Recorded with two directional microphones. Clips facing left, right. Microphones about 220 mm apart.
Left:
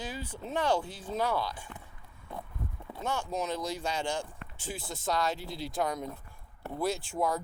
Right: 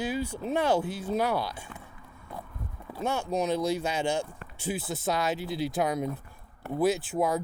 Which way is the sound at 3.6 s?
10° right (ahead or behind).